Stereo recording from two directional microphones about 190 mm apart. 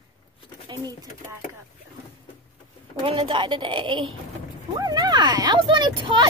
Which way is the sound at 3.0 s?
25° right (ahead or behind).